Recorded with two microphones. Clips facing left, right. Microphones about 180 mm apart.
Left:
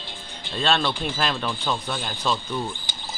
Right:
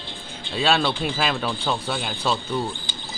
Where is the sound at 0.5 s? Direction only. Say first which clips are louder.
Right 2 dB; 5° right (ahead or behind).